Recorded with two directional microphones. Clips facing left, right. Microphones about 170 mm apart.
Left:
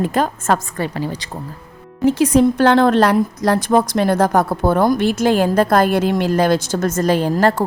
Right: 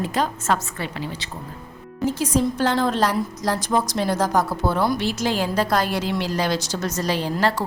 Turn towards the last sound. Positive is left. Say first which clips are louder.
# left 7 dB
turn(degrees=50)  # may be behind; listen again after turning